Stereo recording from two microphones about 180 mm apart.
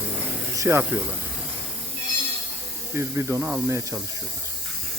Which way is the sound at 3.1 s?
10° right (ahead or behind).